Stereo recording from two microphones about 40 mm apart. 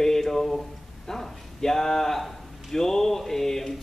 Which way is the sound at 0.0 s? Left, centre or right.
Centre.